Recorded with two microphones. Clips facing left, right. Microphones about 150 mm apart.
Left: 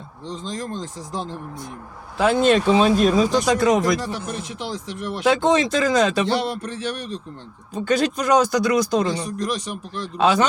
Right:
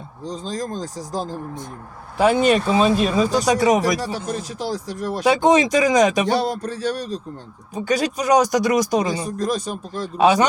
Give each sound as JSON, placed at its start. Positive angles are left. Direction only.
{"t": 0.3, "sound": "speech", "side_deg": -35}
{"t": 2.1, "sound": "speech", "side_deg": -10}
{"t": 4.0, "sound": "speech", "side_deg": -35}
{"t": 5.2, "sound": "speech", "side_deg": -15}
{"t": 6.4, "sound": "speech", "side_deg": -35}
{"t": 7.7, "sound": "speech", "side_deg": -10}